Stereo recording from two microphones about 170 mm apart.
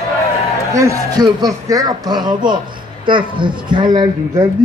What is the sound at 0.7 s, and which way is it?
A man's voice, 20° right (ahead or behind).